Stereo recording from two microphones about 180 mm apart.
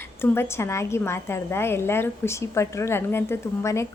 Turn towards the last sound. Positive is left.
turn(degrees=15)  # may be behind; listen again after turning